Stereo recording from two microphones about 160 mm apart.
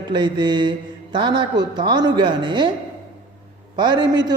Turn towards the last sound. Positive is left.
turn(degrees=-25)  # may be behind; listen again after turning